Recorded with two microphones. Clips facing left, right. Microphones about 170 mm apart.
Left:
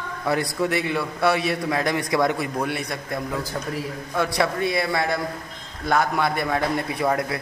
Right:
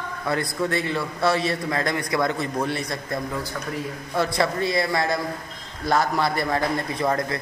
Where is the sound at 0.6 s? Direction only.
10° left (ahead or behind).